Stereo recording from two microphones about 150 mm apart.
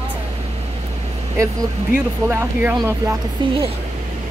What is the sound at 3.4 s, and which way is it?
Speech, 35° right (ahead or behind).